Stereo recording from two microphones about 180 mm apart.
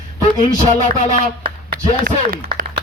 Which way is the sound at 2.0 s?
55° right (ahead or behind).